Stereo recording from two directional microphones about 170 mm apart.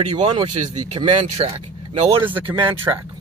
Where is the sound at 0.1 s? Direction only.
30° right (ahead or behind).